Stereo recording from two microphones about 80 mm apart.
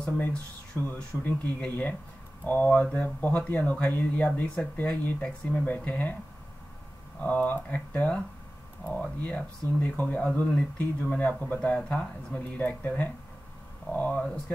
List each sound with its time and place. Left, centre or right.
0.0 s speech: centre
7.4 s speech: centre